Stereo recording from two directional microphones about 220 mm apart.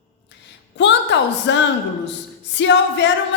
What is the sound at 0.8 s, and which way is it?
A woman's voice, 55° left (ahead or behind).